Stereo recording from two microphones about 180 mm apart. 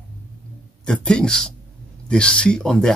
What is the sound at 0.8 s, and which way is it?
Speech, 5° left (ahead or behind).